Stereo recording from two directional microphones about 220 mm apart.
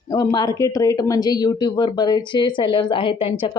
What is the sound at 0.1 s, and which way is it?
Speech, 15° left (ahead or behind).